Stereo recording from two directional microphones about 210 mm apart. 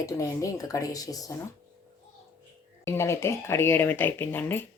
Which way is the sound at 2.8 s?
10° left (ahead or behind).